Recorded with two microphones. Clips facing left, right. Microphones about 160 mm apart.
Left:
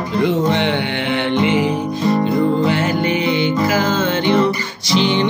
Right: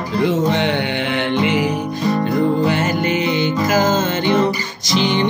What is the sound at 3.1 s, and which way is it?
Music, 60° left (ahead or behind).